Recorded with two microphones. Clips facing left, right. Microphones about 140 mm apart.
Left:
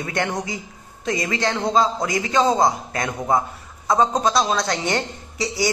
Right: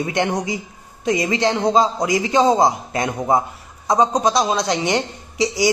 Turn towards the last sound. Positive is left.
turn(degrees=-20)  # may be behind; listen again after turning